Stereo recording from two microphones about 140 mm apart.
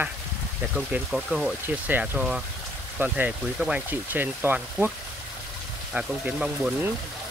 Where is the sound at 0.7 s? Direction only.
5° right (ahead or behind).